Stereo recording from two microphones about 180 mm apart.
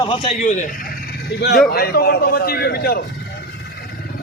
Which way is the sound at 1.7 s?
60° left (ahead or behind).